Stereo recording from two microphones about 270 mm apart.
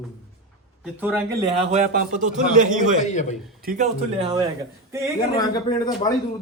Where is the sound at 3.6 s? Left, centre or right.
Right.